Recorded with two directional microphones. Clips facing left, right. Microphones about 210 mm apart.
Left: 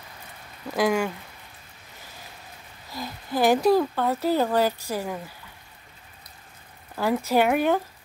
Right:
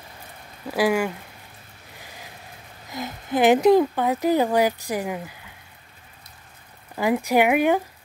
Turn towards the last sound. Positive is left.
turn(degrees=-15)  # may be behind; listen again after turning